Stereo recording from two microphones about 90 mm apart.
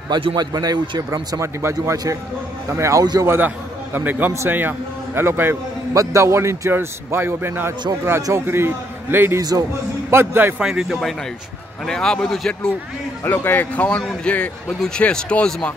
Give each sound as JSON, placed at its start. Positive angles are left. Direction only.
{"t": 0.1, "sound": "speech", "side_deg": -65}
{"t": 0.5, "sound": "a man's voice", "side_deg": -45}
{"t": 3.3, "sound": "a man's voice", "side_deg": -20}
{"t": 9.4, "sound": "a man's voice", "side_deg": -45}
{"t": 10.1, "sound": "a man's voice", "side_deg": -20}
{"t": 10.6, "sound": "speech", "side_deg": -5}
{"t": 13.2, "sound": "speech", "side_deg": 25}